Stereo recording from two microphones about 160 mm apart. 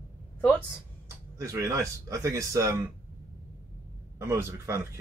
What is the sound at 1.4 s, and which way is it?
Speech, 20° right (ahead or behind).